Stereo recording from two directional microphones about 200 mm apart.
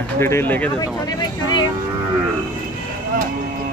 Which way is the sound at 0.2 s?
10° left (ahead or behind).